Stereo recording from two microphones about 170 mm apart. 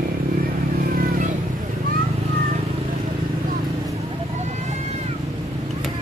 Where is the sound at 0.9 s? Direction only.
60° right (ahead or behind).